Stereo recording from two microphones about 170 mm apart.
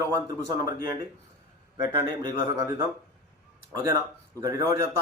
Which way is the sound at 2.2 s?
20° right (ahead or behind).